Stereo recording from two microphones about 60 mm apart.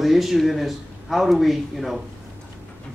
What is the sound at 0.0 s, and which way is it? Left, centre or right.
Speech, centre.